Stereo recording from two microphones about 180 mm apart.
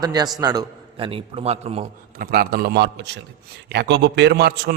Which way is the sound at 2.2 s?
55° right (ahead or behind).